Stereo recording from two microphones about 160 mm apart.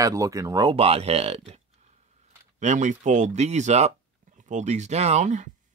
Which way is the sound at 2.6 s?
50° right (ahead or behind).